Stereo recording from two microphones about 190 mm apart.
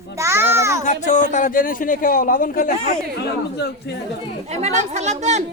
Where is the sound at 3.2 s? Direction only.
60° left (ahead or behind).